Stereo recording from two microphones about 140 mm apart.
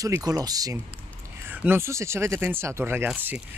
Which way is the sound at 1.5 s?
15° right (ahead or behind).